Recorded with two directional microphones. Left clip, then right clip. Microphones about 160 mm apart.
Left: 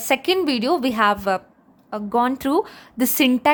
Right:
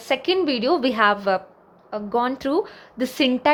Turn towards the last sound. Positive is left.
turn(degrees=30)  # may be behind; listen again after turning